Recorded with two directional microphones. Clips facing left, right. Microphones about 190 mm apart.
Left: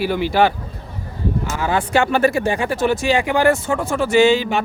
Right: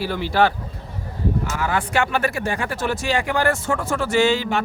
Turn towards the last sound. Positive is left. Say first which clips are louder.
# left 4 dB
turn(degrees=20)  # may be behind; listen again after turning